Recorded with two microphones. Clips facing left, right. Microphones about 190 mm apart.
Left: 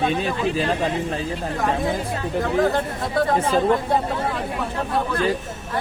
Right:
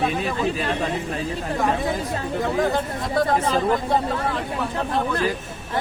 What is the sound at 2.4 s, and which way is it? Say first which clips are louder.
Speech: left 2 dB; centre (ahead or behind).